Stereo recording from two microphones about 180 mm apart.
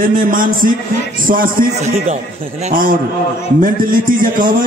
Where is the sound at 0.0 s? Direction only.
50° right (ahead or behind).